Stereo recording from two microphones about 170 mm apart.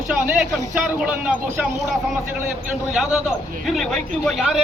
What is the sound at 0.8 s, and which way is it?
A man's voice, 5° right (ahead or behind).